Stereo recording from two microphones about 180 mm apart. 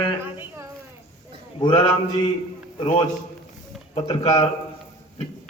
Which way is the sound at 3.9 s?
35° left (ahead or behind).